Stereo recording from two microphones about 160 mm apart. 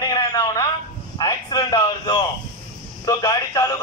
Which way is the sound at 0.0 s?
25° left (ahead or behind).